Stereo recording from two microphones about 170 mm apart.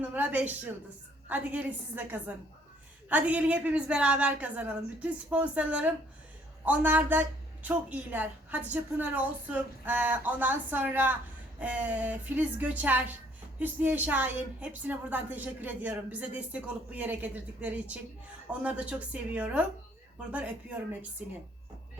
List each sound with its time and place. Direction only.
0.0 s a woman's voice: 10° right (ahead or behind)